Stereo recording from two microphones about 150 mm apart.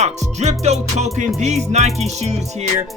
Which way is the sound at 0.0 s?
50° right (ahead or behind).